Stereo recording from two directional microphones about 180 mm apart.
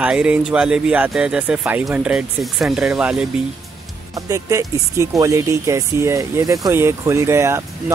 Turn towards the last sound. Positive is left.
turn(degrees=-15)  # may be behind; listen again after turning